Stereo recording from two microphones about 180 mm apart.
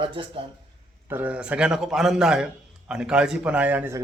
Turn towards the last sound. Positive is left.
turn(degrees=-10)  # may be behind; listen again after turning